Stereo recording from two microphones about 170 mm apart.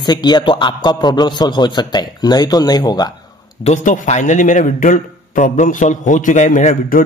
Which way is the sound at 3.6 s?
45° left (ahead or behind).